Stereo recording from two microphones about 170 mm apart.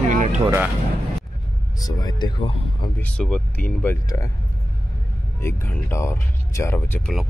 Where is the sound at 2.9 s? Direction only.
5° left (ahead or behind).